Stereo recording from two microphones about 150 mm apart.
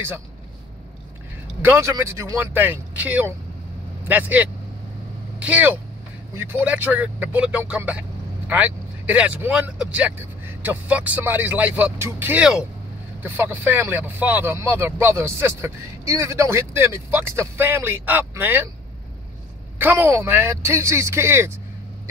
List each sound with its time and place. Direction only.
1.6 s speech: 15° right (ahead or behind)
19.8 s speech: 15° right (ahead or behind)